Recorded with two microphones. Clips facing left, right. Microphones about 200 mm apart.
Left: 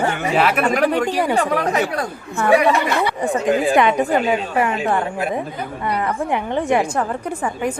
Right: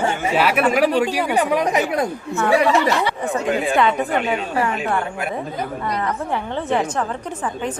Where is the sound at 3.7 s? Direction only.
15° left (ahead or behind).